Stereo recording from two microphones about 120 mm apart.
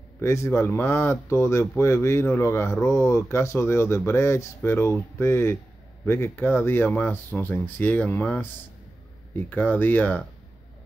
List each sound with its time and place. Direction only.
0.2 s speech: 20° left (ahead or behind)